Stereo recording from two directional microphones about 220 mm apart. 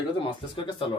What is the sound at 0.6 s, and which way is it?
Speech, 25° left (ahead or behind).